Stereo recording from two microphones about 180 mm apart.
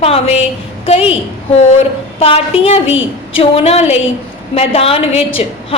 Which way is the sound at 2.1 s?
30° left (ahead or behind).